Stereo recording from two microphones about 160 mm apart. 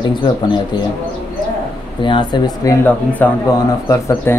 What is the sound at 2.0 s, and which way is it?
Speech, 30° left (ahead or behind).